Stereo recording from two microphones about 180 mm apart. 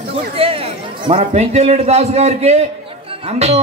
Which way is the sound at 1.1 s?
40° right (ahead or behind).